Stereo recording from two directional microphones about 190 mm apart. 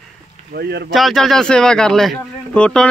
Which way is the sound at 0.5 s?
55° right (ahead or behind).